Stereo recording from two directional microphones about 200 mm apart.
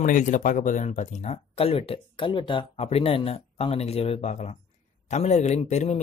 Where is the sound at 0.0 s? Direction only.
40° left (ahead or behind).